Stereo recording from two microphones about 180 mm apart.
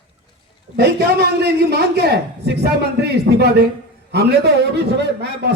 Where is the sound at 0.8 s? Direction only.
65° right (ahead or behind).